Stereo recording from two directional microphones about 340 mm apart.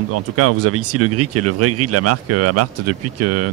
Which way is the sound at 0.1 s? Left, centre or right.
Right.